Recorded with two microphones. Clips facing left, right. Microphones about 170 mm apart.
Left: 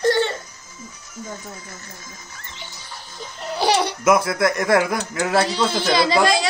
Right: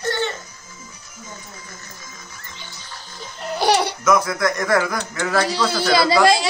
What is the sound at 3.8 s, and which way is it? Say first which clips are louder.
Speech: left 1 dB; 30° left (ahead or behind).